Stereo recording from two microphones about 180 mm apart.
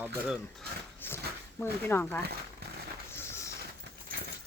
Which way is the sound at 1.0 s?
10° left (ahead or behind).